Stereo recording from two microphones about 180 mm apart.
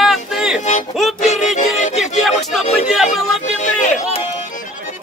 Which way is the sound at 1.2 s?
40° left (ahead or behind).